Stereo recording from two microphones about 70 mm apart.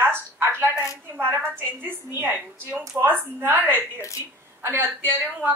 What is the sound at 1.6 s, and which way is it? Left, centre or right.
A woman's voice, right.